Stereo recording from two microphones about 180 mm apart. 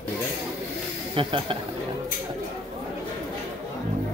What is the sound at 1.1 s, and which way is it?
Speech, 30° right (ahead or behind).